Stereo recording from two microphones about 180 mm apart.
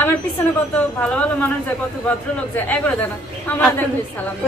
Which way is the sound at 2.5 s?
10° left (ahead or behind).